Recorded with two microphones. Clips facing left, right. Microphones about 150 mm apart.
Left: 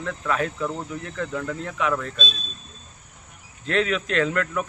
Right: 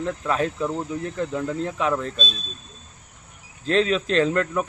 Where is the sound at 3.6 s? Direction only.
30° right (ahead or behind).